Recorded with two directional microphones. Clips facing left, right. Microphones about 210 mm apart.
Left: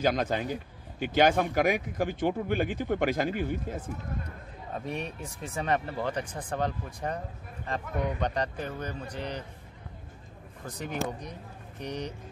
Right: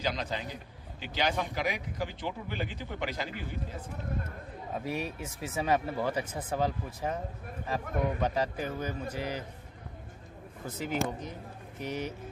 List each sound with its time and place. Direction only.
0.0 s a man's voice: 50° left (ahead or behind)
4.7 s speech: 5° right (ahead or behind)
10.8 s speech: 5° right (ahead or behind)